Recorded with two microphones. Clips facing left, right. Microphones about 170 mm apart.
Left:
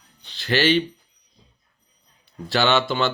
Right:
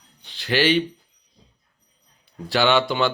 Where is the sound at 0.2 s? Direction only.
15° right (ahead or behind).